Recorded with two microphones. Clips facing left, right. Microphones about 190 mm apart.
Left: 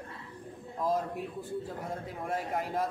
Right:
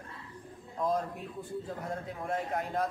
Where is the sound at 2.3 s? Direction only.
5° left (ahead or behind).